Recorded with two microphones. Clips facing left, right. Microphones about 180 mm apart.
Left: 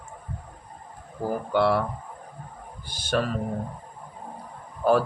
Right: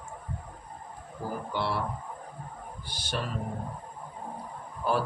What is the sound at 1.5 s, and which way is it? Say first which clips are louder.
Speech: left 11 dB; 55° left (ahead or behind).